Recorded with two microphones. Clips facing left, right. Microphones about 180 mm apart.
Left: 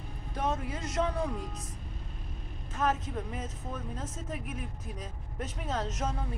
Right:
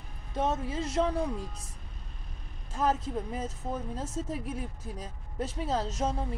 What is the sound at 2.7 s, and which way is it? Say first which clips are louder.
Speech: right 2 dB; 30° right (ahead or behind).